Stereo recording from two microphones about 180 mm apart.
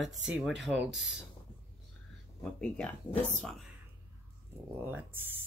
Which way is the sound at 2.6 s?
5° left (ahead or behind).